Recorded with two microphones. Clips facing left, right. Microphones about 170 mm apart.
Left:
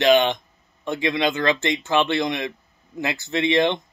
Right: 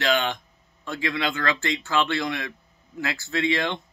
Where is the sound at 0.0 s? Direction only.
20° left (ahead or behind).